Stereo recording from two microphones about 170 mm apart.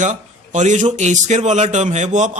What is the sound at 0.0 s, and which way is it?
A man's voice, 45° right (ahead or behind).